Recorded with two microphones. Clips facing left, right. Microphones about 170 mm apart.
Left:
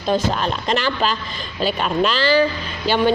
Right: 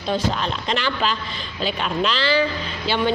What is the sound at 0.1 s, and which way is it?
Speech, 45° left (ahead or behind).